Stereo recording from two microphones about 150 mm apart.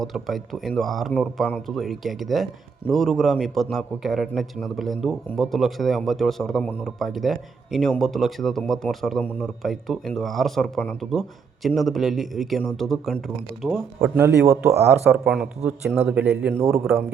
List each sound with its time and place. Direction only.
0.0 s speech: centre (ahead or behind)
14.2 s speech: 15° right (ahead or behind)
15.2 s speech: 5° right (ahead or behind)